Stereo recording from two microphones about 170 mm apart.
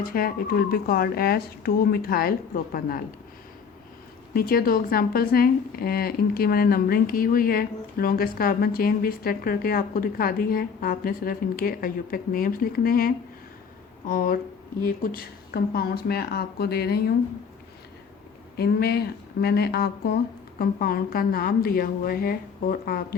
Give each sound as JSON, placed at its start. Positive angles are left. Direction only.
{"t": 0.0, "sound": "speech", "side_deg": 60}
{"t": 4.4, "sound": "speech", "side_deg": 60}
{"t": 18.5, "sound": "speech", "side_deg": 70}